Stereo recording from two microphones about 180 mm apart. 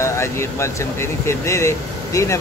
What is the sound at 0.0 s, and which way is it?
Speech, 15° left (ahead or behind).